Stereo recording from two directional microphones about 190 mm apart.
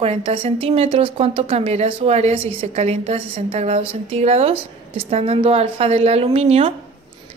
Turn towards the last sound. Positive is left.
turn(degrees=-30)  # may be behind; listen again after turning